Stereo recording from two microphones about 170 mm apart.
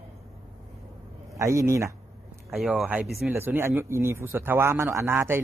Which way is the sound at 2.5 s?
Centre (ahead or behind).